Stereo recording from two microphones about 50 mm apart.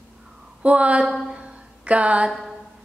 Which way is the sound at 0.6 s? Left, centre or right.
Right.